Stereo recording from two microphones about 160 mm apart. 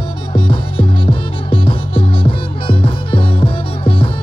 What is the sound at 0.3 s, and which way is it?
Music, 30° left (ahead or behind).